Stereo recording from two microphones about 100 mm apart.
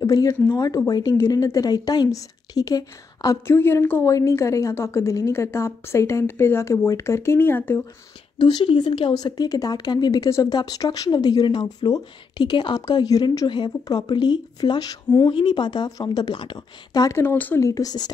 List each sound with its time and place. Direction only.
0.0 s a woman's voice: 35° left (ahead or behind)
3.4 s a woman's voice: 25° left (ahead or behind)
8.4 s speech: 50° left (ahead or behind)
9.1 s a woman's voice: 40° left (ahead or behind)
17.1 s a woman's voice: 20° left (ahead or behind)
17.6 s a woman's voice: 35° left (ahead or behind)